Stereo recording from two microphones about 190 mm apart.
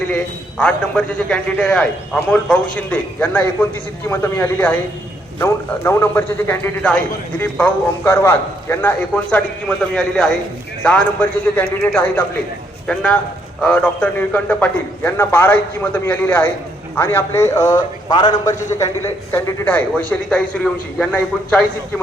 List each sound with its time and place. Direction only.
0.6 s a man's voice: 5° left (ahead or behind)